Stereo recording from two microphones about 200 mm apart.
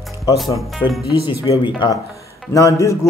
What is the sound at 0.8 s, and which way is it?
Speech, 20° left (ahead or behind).